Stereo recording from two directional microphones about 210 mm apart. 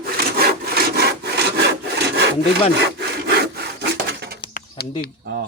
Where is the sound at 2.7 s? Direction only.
50° right (ahead or behind).